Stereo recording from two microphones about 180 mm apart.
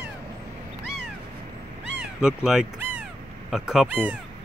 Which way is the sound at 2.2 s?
5° right (ahead or behind).